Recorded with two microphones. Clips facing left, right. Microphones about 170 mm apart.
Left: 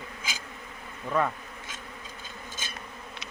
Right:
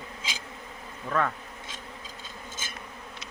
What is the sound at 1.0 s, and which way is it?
Speech, 10° left (ahead or behind).